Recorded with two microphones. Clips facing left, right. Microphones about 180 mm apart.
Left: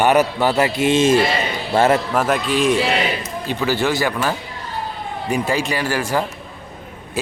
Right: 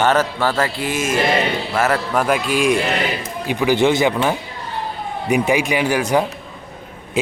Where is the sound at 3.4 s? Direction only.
15° right (ahead or behind).